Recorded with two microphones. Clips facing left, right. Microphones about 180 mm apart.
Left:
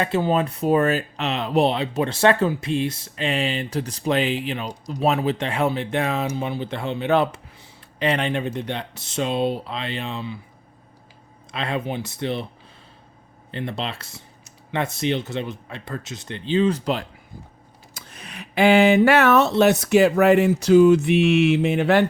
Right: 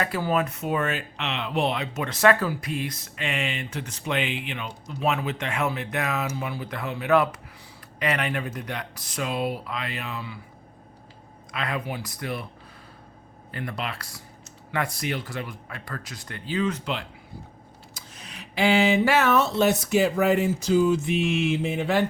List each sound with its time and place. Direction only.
0.0 s speech: 25° left (ahead or behind)
11.5 s speech: 25° left (ahead or behind)
13.5 s speech: 25° left (ahead or behind)
17.9 s speech: 60° left (ahead or behind)